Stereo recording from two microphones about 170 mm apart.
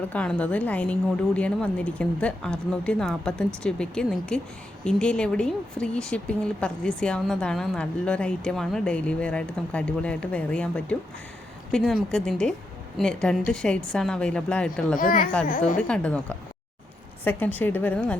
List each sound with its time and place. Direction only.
0.1 s a woman's voice: 5° left (ahead or behind)
14.9 s speech: 55° left (ahead or behind)
15.8 s a woman's voice: 5° left (ahead or behind)
17.2 s a woman's voice: 10° left (ahead or behind)